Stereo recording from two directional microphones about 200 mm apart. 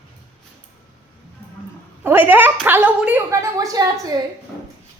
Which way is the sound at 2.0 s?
10° right (ahead or behind).